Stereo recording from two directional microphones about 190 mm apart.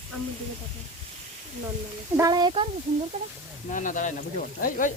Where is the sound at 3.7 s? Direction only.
45° left (ahead or behind).